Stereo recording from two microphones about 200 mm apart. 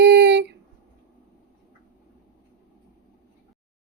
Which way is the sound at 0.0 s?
60° right (ahead or behind).